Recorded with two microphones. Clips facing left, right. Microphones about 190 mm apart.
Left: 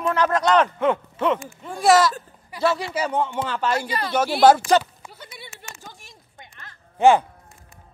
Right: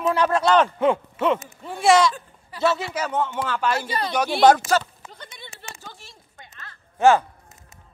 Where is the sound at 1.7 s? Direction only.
Centre (ahead or behind).